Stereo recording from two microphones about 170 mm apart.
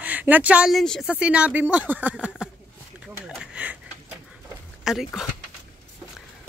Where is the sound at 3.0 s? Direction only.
5° right (ahead or behind).